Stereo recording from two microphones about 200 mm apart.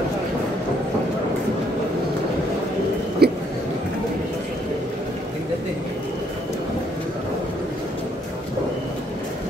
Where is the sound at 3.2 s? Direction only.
55° right (ahead or behind).